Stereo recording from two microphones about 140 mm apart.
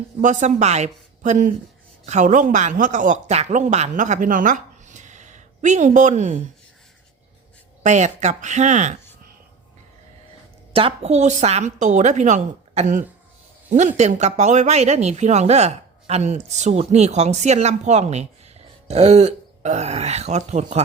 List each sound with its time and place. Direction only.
0.2 s a woman's voice: 60° right (ahead or behind)
7.9 s a woman's voice: 55° right (ahead or behind)
10.8 s a woman's voice: 45° right (ahead or behind)